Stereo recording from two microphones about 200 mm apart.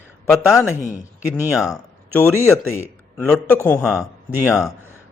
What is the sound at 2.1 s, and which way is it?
A man's voice, 10° left (ahead or behind).